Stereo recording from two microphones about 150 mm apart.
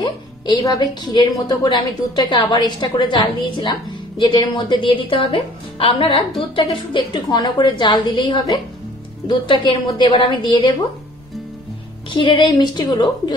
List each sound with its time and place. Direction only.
0.0 s a woman's voice: 25° left (ahead or behind)
12.1 s a woman's voice: 35° left (ahead or behind)